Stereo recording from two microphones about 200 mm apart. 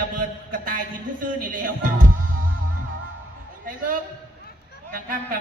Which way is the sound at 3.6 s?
45° right (ahead or behind).